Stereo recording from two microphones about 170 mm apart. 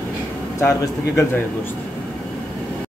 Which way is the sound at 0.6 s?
15° left (ahead or behind).